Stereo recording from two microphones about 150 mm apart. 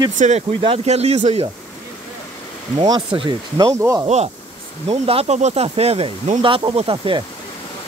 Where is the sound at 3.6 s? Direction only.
20° right (ahead or behind).